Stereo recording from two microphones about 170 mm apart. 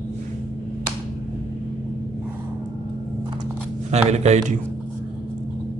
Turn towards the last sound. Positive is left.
turn(degrees=-40)  # may be behind; listen again after turning